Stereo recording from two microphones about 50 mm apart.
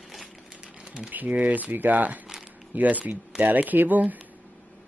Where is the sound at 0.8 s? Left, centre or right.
Centre.